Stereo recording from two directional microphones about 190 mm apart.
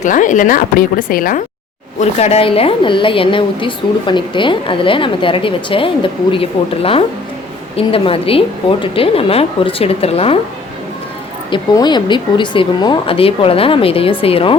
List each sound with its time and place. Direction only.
0.0 s a woman's voice: 40° left (ahead or behind)
2.0 s a woman's voice: 35° left (ahead or behind)
11.5 s a woman's voice: 20° left (ahead or behind)